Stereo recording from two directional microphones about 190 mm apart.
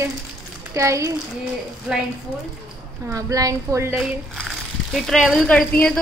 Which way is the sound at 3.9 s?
Centre (ahead or behind).